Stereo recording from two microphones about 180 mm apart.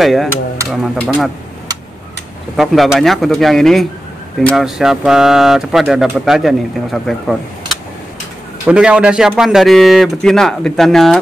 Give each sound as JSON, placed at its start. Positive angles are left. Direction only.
{"t": 0.0, "sound": "speech", "side_deg": 0}
{"t": 2.5, "sound": "speech", "side_deg": 0}